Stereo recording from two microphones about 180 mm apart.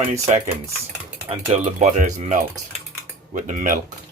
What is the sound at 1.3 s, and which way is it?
Speech, 40° right (ahead or behind).